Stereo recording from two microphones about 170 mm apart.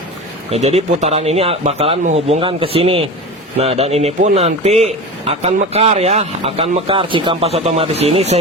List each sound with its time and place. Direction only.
0.5 s a man's voice: 40° right (ahead or behind)